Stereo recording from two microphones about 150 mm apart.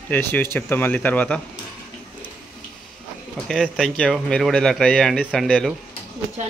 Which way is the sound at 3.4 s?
5° left (ahead or behind).